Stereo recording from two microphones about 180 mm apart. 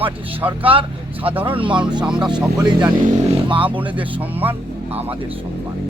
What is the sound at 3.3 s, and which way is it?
Speech, 30° right (ahead or behind).